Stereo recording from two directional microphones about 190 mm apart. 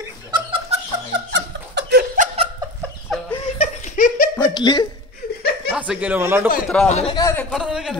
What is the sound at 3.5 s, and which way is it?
Laughter, 35° left (ahead or behind).